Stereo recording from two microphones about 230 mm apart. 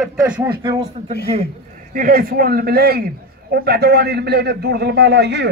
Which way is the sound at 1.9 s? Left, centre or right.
Right.